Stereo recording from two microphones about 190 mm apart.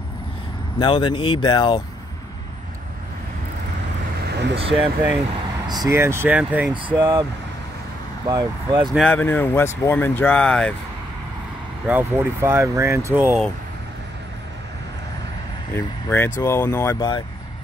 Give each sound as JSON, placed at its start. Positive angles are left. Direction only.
{"t": 0.7, "sound": "speech", "side_deg": 25}
{"t": 4.2, "sound": "vehicle", "side_deg": -60}
{"t": 4.6, "sound": "speech", "side_deg": -30}
{"t": 5.7, "sound": "speech", "side_deg": -20}
{"t": 7.0, "sound": "speech", "side_deg": -25}
{"t": 8.3, "sound": "speech", "side_deg": -20}
{"t": 8.9, "sound": "speech", "side_deg": 5}
{"t": 11.9, "sound": "speech", "side_deg": -10}
{"t": 15.7, "sound": "speech", "side_deg": 10}